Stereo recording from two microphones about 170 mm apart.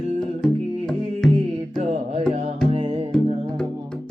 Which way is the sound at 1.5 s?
35° right (ahead or behind).